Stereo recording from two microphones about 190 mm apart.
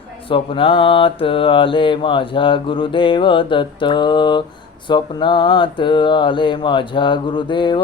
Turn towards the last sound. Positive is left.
turn(degrees=25)  # may be behind; listen again after turning